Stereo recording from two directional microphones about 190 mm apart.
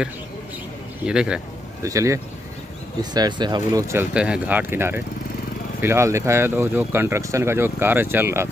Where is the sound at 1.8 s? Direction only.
15° right (ahead or behind).